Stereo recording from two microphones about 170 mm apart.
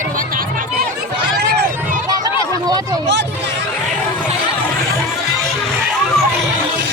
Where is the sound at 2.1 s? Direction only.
20° right (ahead or behind).